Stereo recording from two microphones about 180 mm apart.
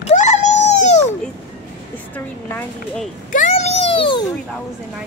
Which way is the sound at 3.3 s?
40° left (ahead or behind).